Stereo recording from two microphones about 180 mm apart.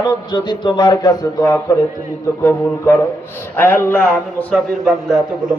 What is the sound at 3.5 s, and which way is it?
A man's voice, 10° left (ahead or behind).